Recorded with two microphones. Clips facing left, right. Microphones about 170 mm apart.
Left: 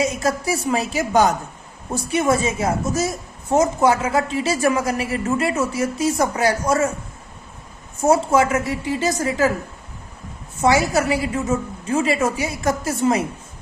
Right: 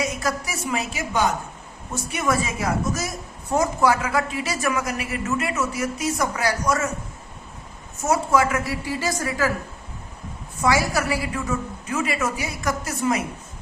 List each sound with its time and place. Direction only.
0.0 s a woman's voice: 25° left (ahead or behind)
8.0 s a woman's voice: 25° left (ahead or behind)
10.6 s a woman's voice: 25° left (ahead or behind)